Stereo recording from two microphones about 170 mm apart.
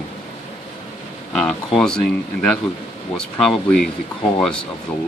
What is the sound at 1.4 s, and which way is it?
Speech, 5° left (ahead or behind).